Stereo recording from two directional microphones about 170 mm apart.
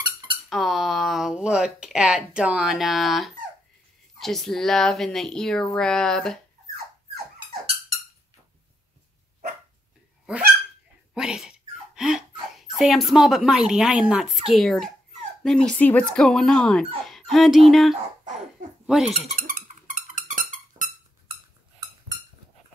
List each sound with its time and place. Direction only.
0.5 s speech: centre (ahead or behind)
11.1 s speech: 5° right (ahead or behind)
17.0 s dog: centre (ahead or behind)
18.9 s speech: centre (ahead or behind)
19.4 s a sound: 50° right (ahead or behind)